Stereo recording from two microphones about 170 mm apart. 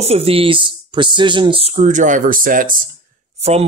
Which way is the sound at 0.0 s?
35° right (ahead or behind).